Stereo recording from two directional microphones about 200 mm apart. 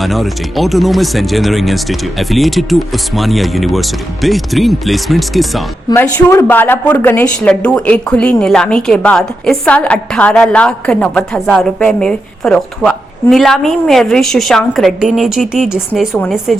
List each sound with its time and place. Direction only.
0.0 s a woman's voice: centre (ahead or behind)
5.9 s a woman's voice: 10° left (ahead or behind)